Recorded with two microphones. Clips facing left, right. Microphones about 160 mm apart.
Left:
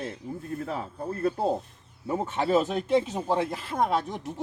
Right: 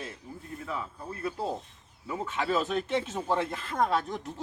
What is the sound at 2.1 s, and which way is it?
Speech, 35° left (ahead or behind).